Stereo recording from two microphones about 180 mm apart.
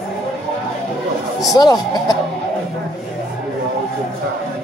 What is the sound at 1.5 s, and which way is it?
Speech, 20° left (ahead or behind).